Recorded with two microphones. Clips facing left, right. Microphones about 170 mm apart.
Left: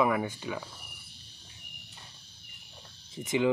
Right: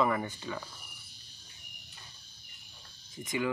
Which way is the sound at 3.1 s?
25° left (ahead or behind).